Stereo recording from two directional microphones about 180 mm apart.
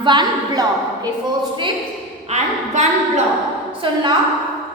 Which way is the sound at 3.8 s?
30° right (ahead or behind).